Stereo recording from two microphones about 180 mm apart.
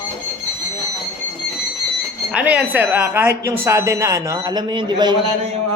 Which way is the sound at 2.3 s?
5° right (ahead or behind).